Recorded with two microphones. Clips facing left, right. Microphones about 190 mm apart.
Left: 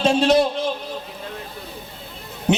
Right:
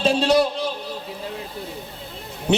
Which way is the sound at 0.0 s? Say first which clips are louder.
Left 2 dB; 35° right (ahead or behind).